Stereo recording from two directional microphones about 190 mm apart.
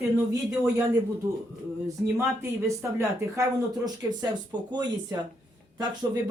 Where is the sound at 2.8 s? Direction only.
15° right (ahead or behind).